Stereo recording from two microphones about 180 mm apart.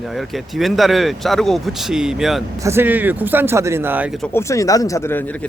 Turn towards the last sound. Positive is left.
turn(degrees=10)  # may be behind; listen again after turning